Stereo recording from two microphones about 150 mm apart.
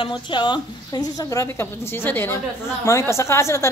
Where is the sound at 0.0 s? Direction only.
30° left (ahead or behind).